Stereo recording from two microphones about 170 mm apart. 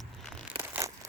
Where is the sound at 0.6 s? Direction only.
10° right (ahead or behind).